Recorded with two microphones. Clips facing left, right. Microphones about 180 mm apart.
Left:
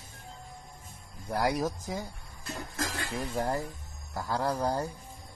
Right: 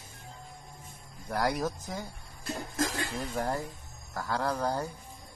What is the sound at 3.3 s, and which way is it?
Speech, 15° left (ahead or behind).